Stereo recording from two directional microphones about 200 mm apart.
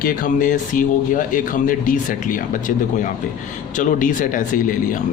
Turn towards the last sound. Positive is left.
turn(degrees=40)  # may be behind; listen again after turning